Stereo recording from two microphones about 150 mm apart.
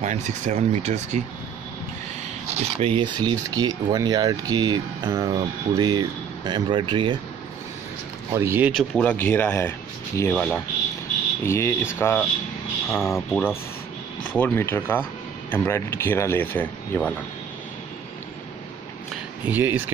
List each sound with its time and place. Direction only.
0.0 s speech: 50° right (ahead or behind)
2.4 s speech: 45° right (ahead or behind)
8.3 s speech: 15° right (ahead or behind)
9.0 s speech: 10° left (ahead or behind)
10.3 s speech: 5° left (ahead or behind)
11.4 s speech: 15° left (ahead or behind)
19.4 s speech: 10° right (ahead or behind)